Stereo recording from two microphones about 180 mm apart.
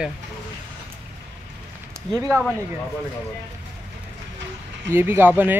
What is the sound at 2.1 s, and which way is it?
Speech, 15° right (ahead or behind).